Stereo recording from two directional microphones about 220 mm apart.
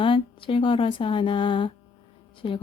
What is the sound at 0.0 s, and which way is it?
Speech, 25° left (ahead or behind).